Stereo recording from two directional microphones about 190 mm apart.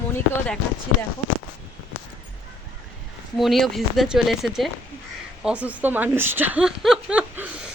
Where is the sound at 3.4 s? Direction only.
Centre (ahead or behind).